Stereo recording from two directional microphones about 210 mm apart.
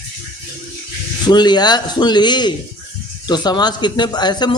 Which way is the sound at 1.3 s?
20° left (ahead or behind).